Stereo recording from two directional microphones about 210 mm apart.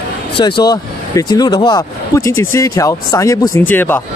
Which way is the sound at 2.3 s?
75° left (ahead or behind).